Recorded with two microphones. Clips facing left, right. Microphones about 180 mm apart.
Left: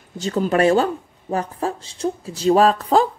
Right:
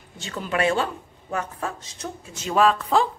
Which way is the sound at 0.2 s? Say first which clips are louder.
Left 7 dB; 40° left (ahead or behind).